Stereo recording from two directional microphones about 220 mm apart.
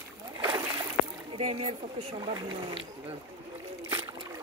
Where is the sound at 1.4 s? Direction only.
30° right (ahead or behind).